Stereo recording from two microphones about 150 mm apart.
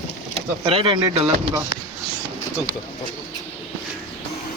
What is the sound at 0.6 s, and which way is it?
Speech, 35° right (ahead or behind).